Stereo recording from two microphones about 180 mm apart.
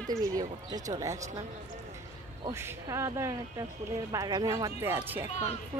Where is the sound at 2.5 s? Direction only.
15° right (ahead or behind).